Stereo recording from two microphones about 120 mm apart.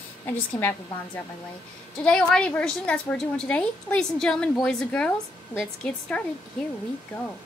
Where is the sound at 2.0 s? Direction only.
5° left (ahead or behind).